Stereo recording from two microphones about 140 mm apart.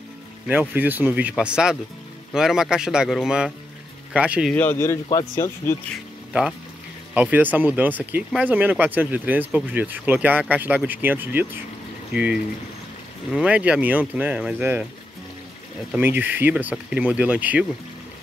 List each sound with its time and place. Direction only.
0.5 s speech: 10° right (ahead or behind)
4.5 s speech: 15° left (ahead or behind)
7.2 s speech: 10° right (ahead or behind)
15.9 s speech: 15° right (ahead or behind)